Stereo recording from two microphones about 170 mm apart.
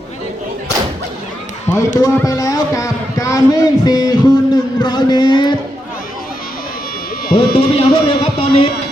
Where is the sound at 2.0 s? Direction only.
20° left (ahead or behind).